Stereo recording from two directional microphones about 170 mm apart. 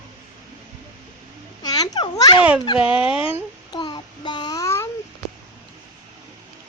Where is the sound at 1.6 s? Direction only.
20° left (ahead or behind).